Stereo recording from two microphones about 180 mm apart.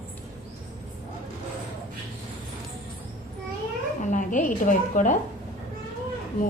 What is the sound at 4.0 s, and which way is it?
A woman's voice, 45° left (ahead or behind).